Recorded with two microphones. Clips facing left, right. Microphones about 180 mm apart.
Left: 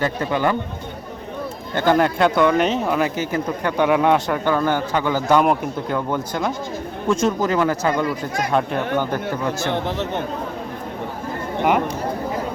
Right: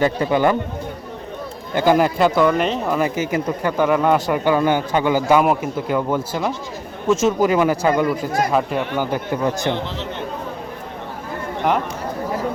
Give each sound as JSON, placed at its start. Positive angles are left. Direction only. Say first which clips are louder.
{"t": 0.0, "sound": "a man's voice", "louder": "right 4 dB", "side_deg": -15}
{"t": 1.7, "sound": "a man's voice", "louder": "right 2 dB", "side_deg": -10}